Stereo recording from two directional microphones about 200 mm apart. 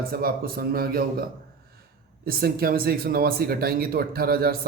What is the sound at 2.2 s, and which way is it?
Speech, 50° right (ahead or behind).